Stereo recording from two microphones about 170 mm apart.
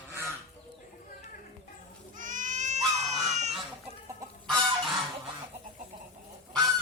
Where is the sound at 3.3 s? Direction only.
40° right (ahead or behind).